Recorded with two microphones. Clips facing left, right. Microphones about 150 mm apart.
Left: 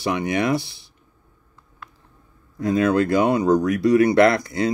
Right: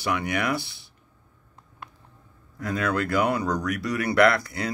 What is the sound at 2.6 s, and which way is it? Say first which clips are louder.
Speech: left 8 dB; 25° left (ahead or behind).